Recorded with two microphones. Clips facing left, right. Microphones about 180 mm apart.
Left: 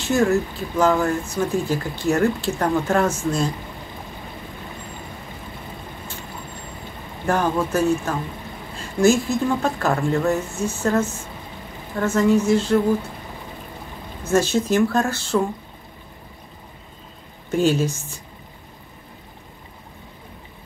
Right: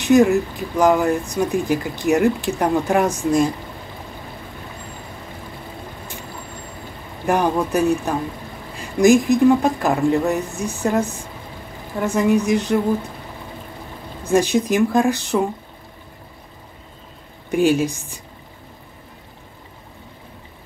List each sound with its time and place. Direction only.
0.0 s speech: 15° right (ahead or behind)
7.2 s speech: 15° right (ahead or behind)
14.2 s speech: 15° right (ahead or behind)
17.5 s speech: 15° right (ahead or behind)